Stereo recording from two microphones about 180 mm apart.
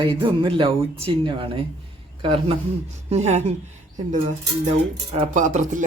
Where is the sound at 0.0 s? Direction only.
30° right (ahead or behind).